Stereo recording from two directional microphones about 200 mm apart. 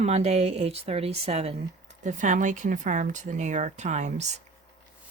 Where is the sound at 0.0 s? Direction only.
35° right (ahead or behind).